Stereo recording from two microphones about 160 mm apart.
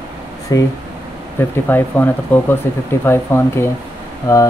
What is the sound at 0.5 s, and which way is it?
Speech, 20° left (ahead or behind).